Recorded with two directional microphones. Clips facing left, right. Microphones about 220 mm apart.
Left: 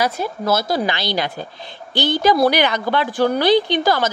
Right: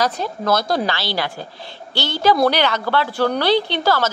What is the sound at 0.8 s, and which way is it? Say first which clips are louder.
A woman's voice: left 1 dB; 20° left (ahead or behind).